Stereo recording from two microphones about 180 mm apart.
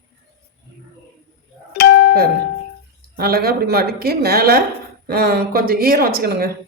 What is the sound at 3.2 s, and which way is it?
A woman's voice, 55° right (ahead or behind).